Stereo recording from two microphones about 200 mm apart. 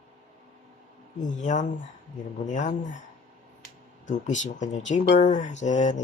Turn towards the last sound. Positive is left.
turn(degrees=35)  # may be behind; listen again after turning